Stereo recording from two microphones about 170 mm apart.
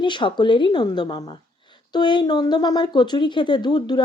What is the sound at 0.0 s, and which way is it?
Speech, 30° left (ahead or behind).